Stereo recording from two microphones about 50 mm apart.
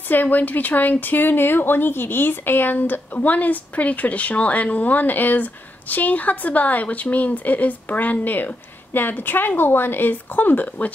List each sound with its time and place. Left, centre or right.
0.1 s speech: left